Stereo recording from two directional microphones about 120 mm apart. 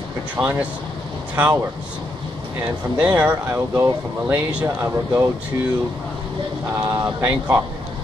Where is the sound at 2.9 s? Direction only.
10° right (ahead or behind).